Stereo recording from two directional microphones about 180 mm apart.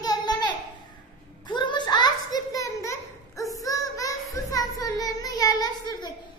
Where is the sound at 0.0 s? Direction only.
20° left (ahead or behind).